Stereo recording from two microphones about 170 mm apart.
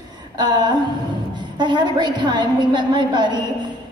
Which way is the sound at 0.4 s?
25° right (ahead or behind).